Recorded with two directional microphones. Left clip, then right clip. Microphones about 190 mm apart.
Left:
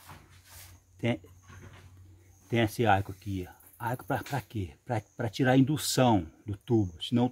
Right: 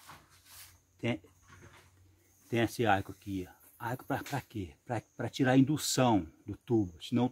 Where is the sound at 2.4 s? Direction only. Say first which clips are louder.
Left 3 dB; 5° left (ahead or behind).